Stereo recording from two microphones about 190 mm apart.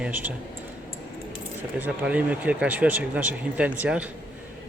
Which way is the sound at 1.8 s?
5° right (ahead or behind).